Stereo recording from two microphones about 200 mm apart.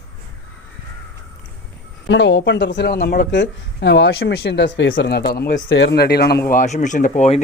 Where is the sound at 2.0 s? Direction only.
60° left (ahead or behind).